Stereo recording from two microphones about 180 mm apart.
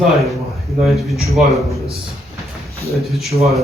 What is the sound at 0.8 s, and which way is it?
Speech, centre (ahead or behind).